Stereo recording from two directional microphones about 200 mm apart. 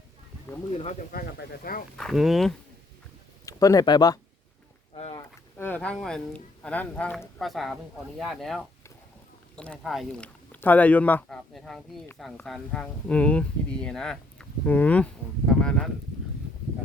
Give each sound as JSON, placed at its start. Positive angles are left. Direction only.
{"t": 1.1, "sound": "speech", "side_deg": 50}
{"t": 2.0, "sound": "speech", "side_deg": 0}
{"t": 3.4, "sound": "speech", "side_deg": 15}
{"t": 4.9, "sound": "a sound", "side_deg": 30}
{"t": 5.5, "sound": "speech", "side_deg": 10}